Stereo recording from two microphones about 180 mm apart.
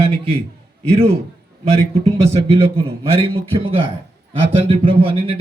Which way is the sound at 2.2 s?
35° right (ahead or behind).